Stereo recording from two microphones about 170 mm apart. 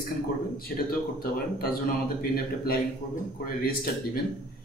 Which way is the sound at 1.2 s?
60° left (ahead or behind).